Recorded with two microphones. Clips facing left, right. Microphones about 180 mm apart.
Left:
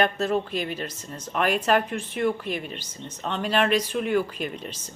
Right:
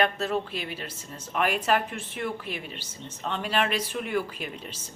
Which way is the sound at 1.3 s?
10° right (ahead or behind).